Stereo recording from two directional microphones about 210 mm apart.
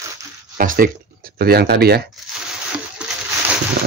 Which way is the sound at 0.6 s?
45° right (ahead or behind).